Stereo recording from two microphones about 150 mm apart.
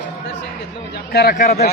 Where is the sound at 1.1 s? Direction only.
85° left.